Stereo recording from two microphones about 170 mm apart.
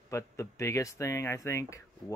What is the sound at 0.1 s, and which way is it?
Speech, 15° left (ahead or behind).